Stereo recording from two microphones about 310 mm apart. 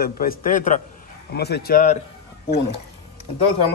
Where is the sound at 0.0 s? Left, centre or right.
Left.